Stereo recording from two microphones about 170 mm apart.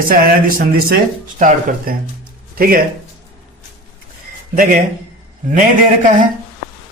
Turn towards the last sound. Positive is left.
turn(degrees=-50)  # may be behind; listen again after turning